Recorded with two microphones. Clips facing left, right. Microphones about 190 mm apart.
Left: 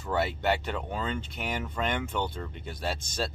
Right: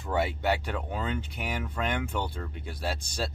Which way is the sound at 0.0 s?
10° right (ahead or behind).